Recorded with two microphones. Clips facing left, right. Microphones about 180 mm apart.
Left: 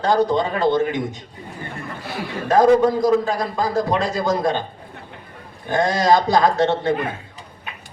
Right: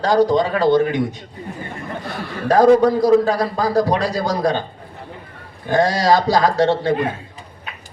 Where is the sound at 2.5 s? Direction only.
20° left (ahead or behind).